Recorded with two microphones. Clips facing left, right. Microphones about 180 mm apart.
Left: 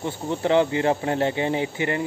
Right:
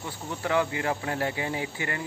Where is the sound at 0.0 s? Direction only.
25° left (ahead or behind).